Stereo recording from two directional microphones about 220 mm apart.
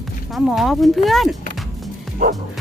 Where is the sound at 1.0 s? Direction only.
Centre (ahead or behind).